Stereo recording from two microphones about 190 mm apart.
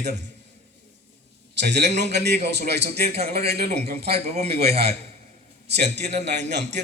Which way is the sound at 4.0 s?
35° right (ahead or behind).